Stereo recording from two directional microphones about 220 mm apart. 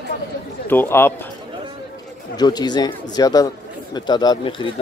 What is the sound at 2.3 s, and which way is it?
Speech, 20° left (ahead or behind).